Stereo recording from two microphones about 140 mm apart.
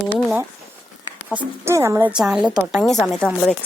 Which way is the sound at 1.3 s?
15° right (ahead or behind).